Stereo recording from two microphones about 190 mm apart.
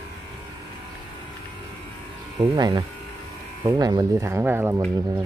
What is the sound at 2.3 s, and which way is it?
Speech, 20° right (ahead or behind).